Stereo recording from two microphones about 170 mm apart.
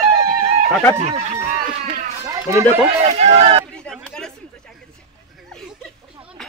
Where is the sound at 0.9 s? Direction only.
40° right (ahead or behind).